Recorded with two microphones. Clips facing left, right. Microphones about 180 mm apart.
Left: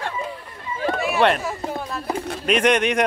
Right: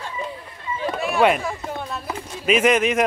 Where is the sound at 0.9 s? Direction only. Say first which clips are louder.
Right 1 dB; centre (ahead or behind).